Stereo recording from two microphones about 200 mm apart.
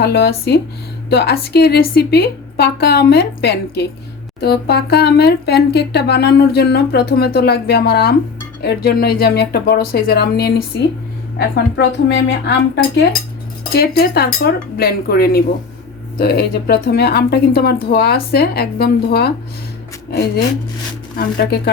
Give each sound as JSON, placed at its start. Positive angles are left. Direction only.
{"t": 0.0, "sound": "a woman's voice", "side_deg": 55}